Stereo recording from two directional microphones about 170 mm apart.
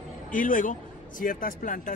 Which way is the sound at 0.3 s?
50° left (ahead or behind).